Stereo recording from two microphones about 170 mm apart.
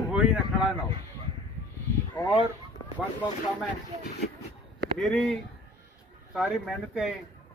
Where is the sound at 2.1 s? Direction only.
25° left (ahead or behind).